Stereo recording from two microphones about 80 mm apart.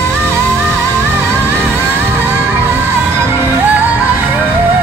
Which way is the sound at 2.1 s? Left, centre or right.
Right.